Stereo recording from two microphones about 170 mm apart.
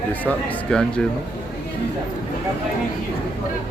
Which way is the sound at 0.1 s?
10° left (ahead or behind).